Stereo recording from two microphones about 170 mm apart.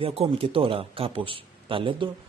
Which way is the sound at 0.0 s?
35° right (ahead or behind).